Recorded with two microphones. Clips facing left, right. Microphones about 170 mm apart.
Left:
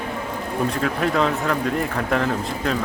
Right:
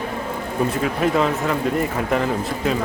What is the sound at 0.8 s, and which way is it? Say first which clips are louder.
Speech: right 1 dB; 5° right (ahead or behind).